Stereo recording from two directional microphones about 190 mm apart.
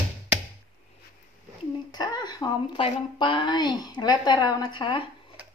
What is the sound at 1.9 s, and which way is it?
A woman's voice, 20° left (ahead or behind).